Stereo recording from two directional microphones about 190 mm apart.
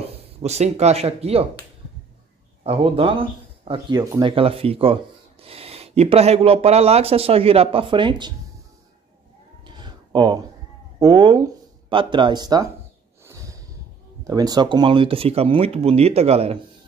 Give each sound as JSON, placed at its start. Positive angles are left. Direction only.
{"t": 0.4, "sound": "speech", "side_deg": -35}
{"t": 2.6, "sound": "speech", "side_deg": -30}
{"t": 9.7, "sound": "a sound", "side_deg": -25}
{"t": 11.0, "sound": "speech", "side_deg": -20}
{"t": 13.2, "sound": "snort", "side_deg": -15}
{"t": 14.2, "sound": "speech", "side_deg": -20}